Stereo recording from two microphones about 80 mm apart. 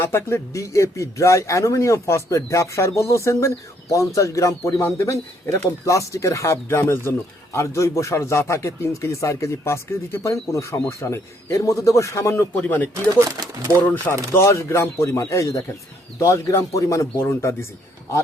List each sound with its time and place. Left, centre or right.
0.0 s speech: left
12.5 s speech: left
12.9 s speech: right
13.8 s speech: left
14.3 s speech: left